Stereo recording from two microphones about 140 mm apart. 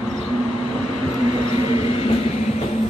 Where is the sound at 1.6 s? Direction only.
45° left (ahead or behind).